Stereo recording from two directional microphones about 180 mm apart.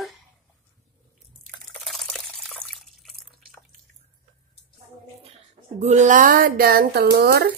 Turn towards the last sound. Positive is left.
turn(degrees=-60)  # may be behind; listen again after turning